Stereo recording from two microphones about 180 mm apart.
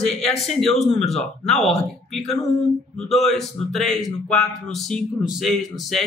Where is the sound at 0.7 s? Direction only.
35° left (ahead or behind).